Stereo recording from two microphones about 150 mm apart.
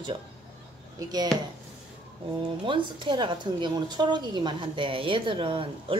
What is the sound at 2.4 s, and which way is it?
A woman's voice, 35° right (ahead or behind).